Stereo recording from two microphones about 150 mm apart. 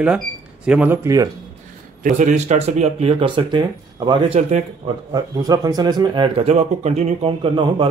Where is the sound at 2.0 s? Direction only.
55° right (ahead or behind).